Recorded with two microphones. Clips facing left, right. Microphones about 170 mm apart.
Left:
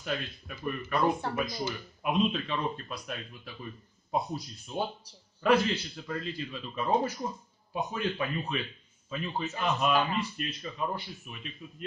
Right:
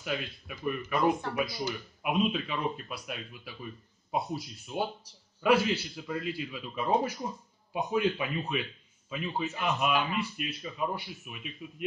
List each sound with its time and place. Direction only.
0.0 s a man's voice: 10° right (ahead or behind)